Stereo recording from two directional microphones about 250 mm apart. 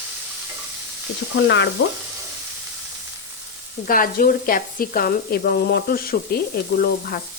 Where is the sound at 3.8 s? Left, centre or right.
Left.